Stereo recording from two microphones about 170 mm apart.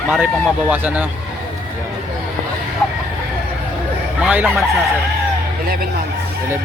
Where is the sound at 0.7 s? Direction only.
10° right (ahead or behind).